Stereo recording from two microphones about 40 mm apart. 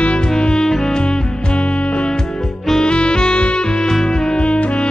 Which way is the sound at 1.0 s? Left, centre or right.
Left.